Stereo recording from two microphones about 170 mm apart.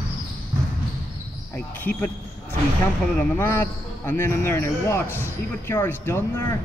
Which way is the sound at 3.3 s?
10° left (ahead or behind).